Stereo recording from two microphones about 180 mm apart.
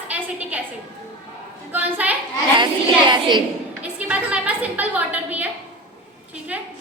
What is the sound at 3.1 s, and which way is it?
Speech, 25° right (ahead or behind).